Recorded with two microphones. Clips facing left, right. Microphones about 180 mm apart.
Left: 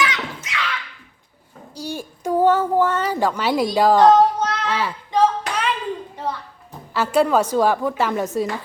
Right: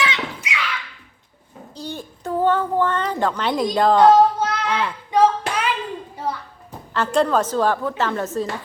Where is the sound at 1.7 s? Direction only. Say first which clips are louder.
Left 2 dB; 10° left (ahead or behind).